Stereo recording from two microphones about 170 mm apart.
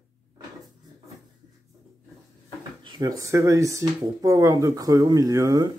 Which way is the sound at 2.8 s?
20° right (ahead or behind).